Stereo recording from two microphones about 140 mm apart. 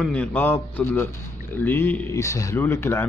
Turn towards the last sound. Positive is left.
turn(degrees=20)  # may be behind; listen again after turning